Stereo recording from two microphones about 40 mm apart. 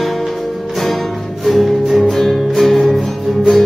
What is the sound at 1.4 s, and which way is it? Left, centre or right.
Music, centre.